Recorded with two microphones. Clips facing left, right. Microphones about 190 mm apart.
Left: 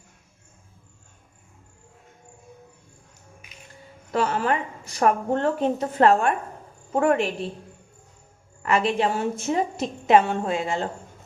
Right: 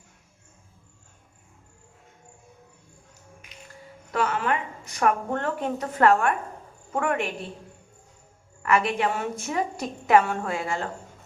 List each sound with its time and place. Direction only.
4.1 s a woman's voice: 30° left (ahead or behind)
8.6 s a woman's voice: 25° left (ahead or behind)